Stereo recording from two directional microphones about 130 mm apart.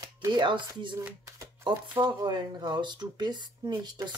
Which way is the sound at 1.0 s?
20° right (ahead or behind).